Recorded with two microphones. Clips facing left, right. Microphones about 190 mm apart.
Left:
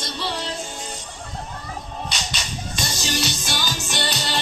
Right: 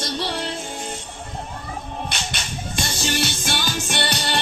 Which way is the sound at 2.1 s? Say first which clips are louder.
Right 1 dB; 55° right (ahead or behind).